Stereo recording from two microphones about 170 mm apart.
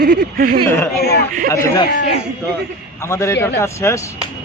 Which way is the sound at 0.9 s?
70° left (ahead or behind).